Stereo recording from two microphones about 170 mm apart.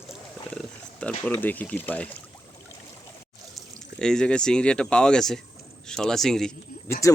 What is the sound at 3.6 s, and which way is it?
Speech, 5° left (ahead or behind).